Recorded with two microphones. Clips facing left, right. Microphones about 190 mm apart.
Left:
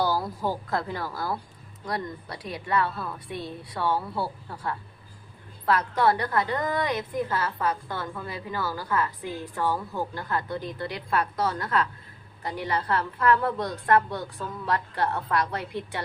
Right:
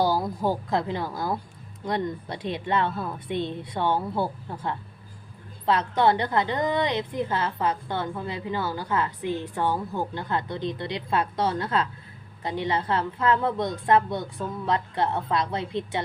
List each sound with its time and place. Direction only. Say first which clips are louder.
0.0 s a woman's voice: right 3 dB; 15° right (ahead or behind)